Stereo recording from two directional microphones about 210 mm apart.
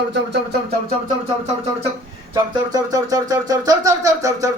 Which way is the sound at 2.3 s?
15° right (ahead or behind).